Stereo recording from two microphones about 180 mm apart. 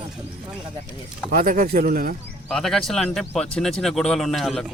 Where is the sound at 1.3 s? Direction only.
50° right (ahead or behind).